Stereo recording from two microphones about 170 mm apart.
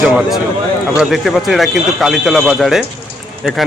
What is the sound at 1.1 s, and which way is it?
A man's voice, centre (ahead or behind).